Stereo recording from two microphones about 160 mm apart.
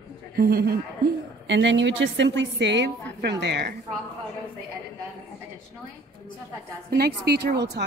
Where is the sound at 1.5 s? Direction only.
90° right.